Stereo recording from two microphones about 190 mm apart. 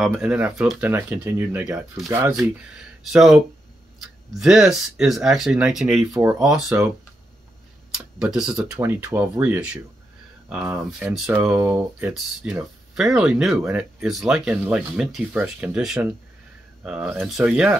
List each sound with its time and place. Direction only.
0.0 s speech: 5° right (ahead or behind)
3.0 s speech: centre (ahead or behind)
7.9 s speech: 5° right (ahead or behind)